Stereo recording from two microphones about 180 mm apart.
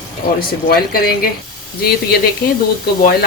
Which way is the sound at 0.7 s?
55° left (ahead or behind).